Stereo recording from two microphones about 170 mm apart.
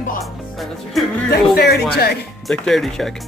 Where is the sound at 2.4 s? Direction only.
Centre (ahead or behind).